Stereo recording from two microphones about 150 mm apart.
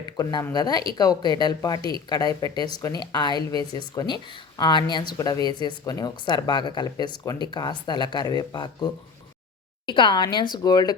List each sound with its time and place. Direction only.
0.2 s speech: 25° left (ahead or behind)